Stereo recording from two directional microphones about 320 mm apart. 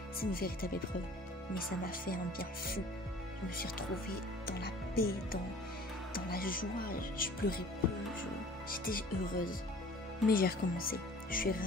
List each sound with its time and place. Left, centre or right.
0.2 s speech: left
1.9 s speech: left